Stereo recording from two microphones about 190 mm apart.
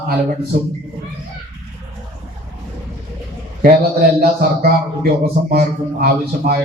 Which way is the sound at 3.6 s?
50° right (ahead or behind).